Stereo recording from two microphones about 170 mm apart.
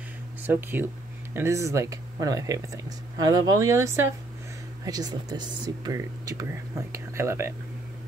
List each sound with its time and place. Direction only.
0.5 s speech: 10° right (ahead or behind)